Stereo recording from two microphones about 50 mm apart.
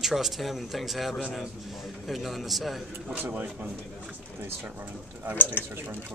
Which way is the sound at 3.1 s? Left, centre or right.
Right.